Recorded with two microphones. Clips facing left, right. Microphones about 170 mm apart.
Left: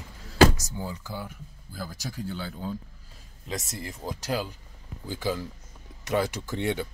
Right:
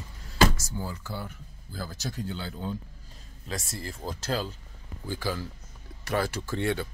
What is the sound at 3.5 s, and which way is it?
Speech, 20° left (ahead or behind).